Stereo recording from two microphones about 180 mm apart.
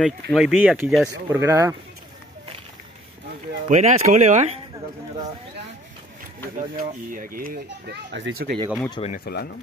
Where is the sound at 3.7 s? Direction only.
40° right (ahead or behind).